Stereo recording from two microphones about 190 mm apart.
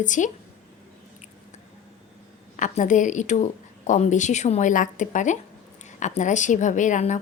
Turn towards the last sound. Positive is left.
turn(degrees=40)  # may be behind; listen again after turning